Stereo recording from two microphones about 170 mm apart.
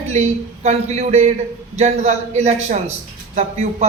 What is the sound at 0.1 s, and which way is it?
A man's voice, 40° right (ahead or behind).